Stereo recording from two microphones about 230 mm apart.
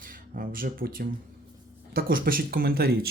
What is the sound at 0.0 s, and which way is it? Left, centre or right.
Speech, right.